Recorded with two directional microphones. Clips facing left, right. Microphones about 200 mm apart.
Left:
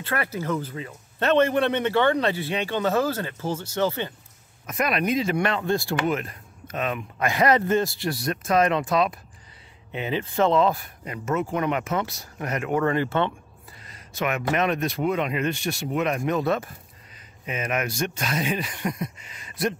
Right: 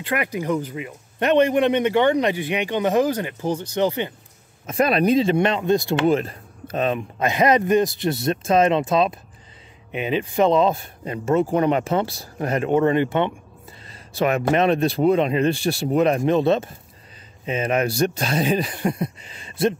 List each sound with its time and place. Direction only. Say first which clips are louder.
0.0 s a man's voice: right 4 dB; 15° right (ahead or behind)
4.6 s speech: right 6 dB; 30° right (ahead or behind)
6.0 s speech: right 7 dB; 30° right (ahead or behind)
13.8 s speech: right 6 dB; 30° right (ahead or behind)